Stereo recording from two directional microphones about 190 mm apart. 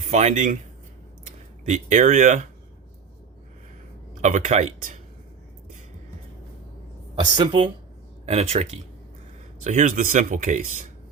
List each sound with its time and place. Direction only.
0.1 s speech: 35° right (ahead or behind)
1.7 s speech: 40° right (ahead or behind)
4.1 s speech: 40° right (ahead or behind)
7.2 s speech: 25° right (ahead or behind); by 10.8 s 40° right (ahead or behind)